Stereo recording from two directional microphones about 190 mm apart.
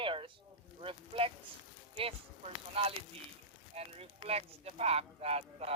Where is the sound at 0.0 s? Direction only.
30° right (ahead or behind).